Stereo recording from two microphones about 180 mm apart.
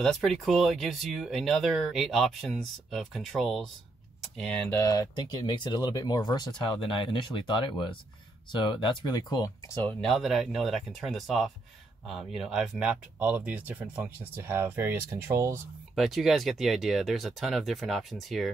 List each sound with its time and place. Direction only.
0.0 s speech: centre (ahead or behind); by 9.5 s 20° left (ahead or behind)
9.8 s speech: centre (ahead or behind); by 15.6 s 15° right (ahead or behind)
15.9 s speech: centre (ahead or behind)